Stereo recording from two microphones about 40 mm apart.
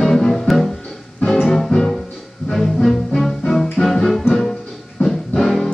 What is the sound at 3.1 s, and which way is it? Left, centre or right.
Music, centre.